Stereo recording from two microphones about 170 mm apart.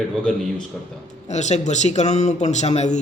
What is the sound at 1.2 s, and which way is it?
Speech, 45° left (ahead or behind).